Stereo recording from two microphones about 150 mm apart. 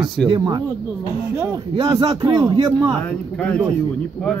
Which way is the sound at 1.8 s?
25° right (ahead or behind).